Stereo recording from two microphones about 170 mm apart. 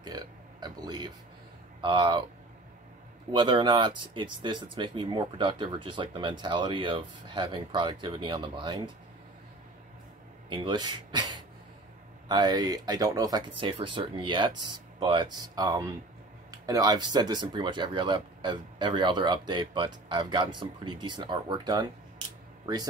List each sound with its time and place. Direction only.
0.0 s speech: 25° right (ahead or behind)
3.3 s speech: 30° right (ahead or behind)
10.5 s speech: 25° right (ahead or behind)